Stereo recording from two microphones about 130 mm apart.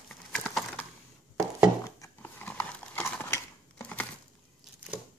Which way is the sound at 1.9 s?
25° left (ahead or behind).